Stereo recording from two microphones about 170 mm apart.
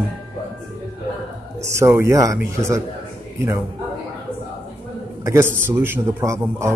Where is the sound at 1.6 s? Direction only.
15° right (ahead or behind).